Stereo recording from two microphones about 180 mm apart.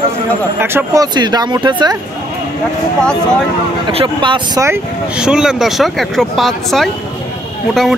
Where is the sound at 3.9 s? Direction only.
25° right (ahead or behind).